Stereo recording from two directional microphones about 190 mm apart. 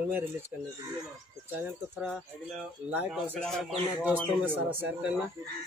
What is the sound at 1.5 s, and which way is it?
A man's voice, 10° right (ahead or behind).